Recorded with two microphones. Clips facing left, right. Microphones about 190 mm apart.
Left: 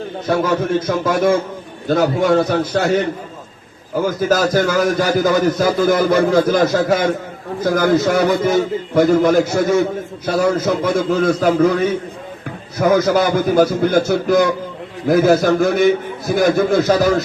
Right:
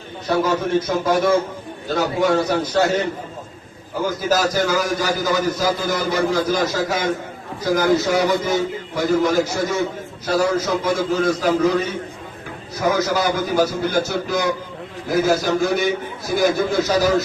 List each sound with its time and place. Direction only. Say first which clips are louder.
0.8 s a man's voice: left 2 dB; 50° left (ahead or behind)
4.0 s a man's voice: left 3 dB; 55° left (ahead or behind)